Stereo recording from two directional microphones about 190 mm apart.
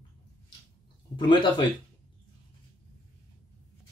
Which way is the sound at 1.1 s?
25° left (ahead or behind).